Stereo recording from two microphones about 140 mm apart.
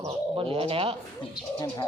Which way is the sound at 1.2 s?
30° left (ahead or behind).